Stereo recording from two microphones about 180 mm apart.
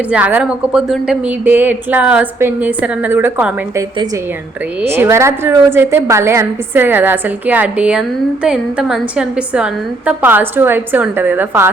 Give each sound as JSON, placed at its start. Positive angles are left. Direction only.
{"t": 0.1, "sound": "a woman's voice", "side_deg": -5}
{"t": 4.9, "sound": "a woman's voice", "side_deg": -15}